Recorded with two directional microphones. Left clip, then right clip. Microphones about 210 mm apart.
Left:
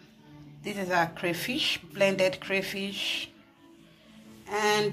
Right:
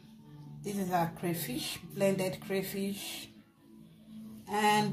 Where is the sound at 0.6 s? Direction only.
Centre (ahead or behind).